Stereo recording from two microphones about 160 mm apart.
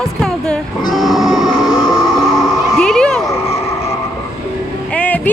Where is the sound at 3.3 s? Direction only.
40° left (ahead or behind).